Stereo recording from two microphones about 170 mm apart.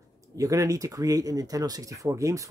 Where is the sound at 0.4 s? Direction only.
20° right (ahead or behind).